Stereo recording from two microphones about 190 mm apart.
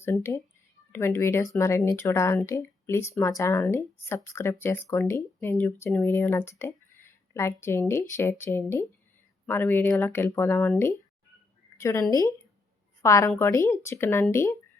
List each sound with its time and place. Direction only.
0.0 s speech: 15° left (ahead or behind)